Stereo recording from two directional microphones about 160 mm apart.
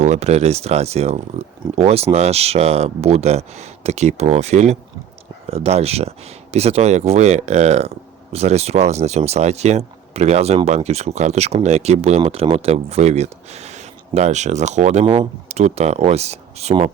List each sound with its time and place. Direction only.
0.0 s speech: 45° right (ahead or behind)
15.0 s speech: 30° right (ahead or behind)